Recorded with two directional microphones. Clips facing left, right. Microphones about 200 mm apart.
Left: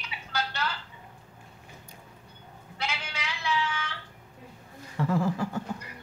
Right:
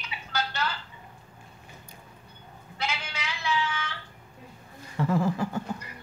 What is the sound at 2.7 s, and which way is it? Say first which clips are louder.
Sheep: right 2 dB; centre (ahead or behind).